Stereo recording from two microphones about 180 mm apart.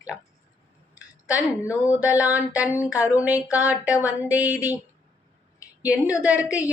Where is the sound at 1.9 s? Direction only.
10° right (ahead or behind).